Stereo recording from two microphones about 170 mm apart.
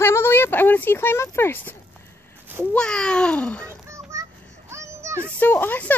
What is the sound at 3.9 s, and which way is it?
Music, 20° right (ahead or behind).